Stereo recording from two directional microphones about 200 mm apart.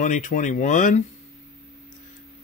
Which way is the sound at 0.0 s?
40° left (ahead or behind).